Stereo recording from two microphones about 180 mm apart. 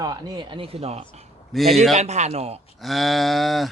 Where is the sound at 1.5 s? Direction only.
Centre (ahead or behind).